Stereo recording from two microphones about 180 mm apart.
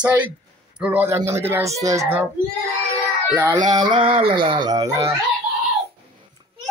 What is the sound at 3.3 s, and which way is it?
Speech, 10° right (ahead or behind).